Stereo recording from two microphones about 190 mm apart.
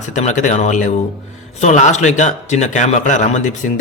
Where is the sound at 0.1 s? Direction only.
40° left (ahead or behind).